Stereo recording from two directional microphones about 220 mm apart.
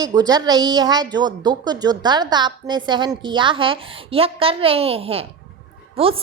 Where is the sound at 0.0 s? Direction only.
15° right (ahead or behind).